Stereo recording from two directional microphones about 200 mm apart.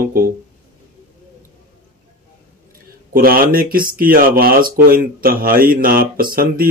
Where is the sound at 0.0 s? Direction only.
45° right (ahead or behind).